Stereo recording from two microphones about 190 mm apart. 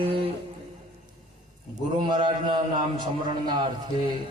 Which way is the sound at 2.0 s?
25° right (ahead or behind).